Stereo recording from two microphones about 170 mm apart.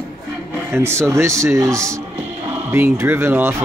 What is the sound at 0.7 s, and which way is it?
Speech, 15° right (ahead or behind).